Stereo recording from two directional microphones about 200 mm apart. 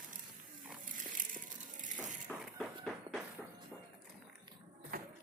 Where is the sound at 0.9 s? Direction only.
40° right (ahead or behind).